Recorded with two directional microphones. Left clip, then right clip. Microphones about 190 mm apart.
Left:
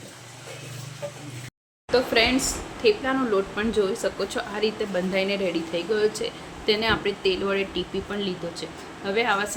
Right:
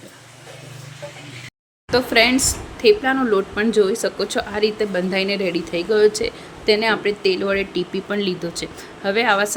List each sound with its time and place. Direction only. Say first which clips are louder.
1.9 s speech: right 5 dB; 35° right (ahead or behind)